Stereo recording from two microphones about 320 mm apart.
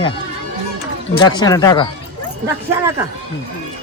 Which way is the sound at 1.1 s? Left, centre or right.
Centre.